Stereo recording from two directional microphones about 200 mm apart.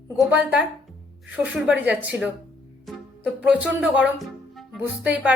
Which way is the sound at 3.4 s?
5° right (ahead or behind).